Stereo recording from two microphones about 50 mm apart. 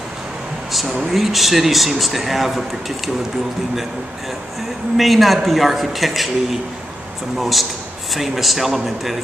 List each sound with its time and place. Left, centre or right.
0.7 s speech: centre
4.9 s speech: centre